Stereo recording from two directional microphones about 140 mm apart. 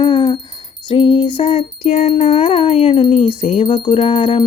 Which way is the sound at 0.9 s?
40° left (ahead or behind).